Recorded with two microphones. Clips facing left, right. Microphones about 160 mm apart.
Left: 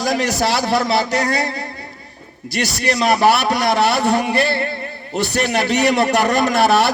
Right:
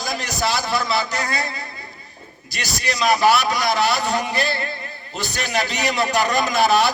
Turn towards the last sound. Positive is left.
turn(degrees=70)  # may be behind; listen again after turning